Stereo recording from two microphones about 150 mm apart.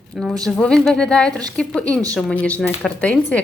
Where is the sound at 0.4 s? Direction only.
5° left (ahead or behind).